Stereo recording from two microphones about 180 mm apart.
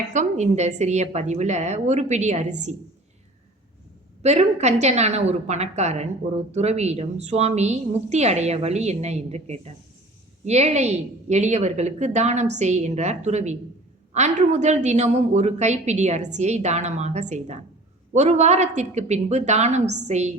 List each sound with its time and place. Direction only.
0.1 s a woman's voice: 40° right (ahead or behind)
4.2 s a woman's voice: 40° right (ahead or behind)